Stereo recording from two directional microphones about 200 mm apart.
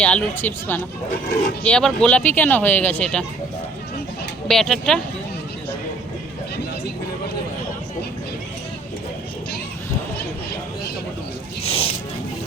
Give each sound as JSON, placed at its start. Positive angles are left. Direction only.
{"t": 0.0, "sound": "speech", "side_deg": 10}
{"t": 4.4, "sound": "speech", "side_deg": 0}
{"t": 11.6, "sound": "a sound", "side_deg": 30}